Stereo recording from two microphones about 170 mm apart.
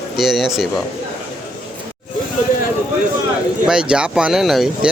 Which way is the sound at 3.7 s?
5° right (ahead or behind).